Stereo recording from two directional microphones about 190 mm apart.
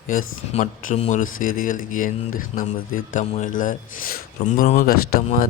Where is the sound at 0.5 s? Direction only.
40° left (ahead or behind).